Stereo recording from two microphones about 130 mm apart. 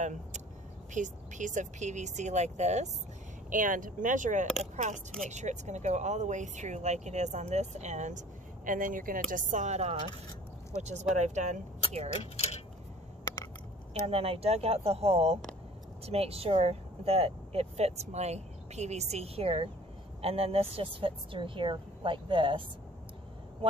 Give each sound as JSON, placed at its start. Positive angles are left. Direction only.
{"t": 0.0, "sound": "speech", "side_deg": -65}
{"t": 3.4, "sound": "speech", "side_deg": -90}
{"t": 8.6, "sound": "speech", "side_deg": -90}
{"t": 12.2, "sound": "speech", "side_deg": 55}
{"t": 13.2, "sound": "a sound", "side_deg": 30}
{"t": 14.0, "sound": "speech", "side_deg": -50}
{"t": 23.6, "sound": "vehicle", "side_deg": -45}